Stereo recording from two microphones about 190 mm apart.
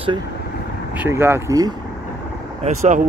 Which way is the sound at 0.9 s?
10° right (ahead or behind).